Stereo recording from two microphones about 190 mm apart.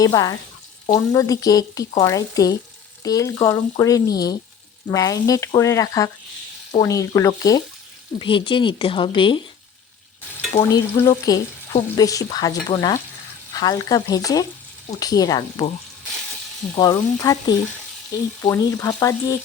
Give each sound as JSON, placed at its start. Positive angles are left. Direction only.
{"t": 0.0, "sound": "speech", "side_deg": 20}
{"t": 4.9, "sound": "frying", "side_deg": 20}
{"t": 6.7, "sound": "speech", "side_deg": 15}
{"t": 10.7, "sound": "speech", "side_deg": 15}
{"t": 16.7, "sound": "speech", "side_deg": 20}